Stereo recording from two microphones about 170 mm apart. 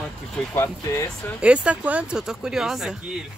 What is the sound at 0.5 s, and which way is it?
Speech, 15° left (ahead or behind).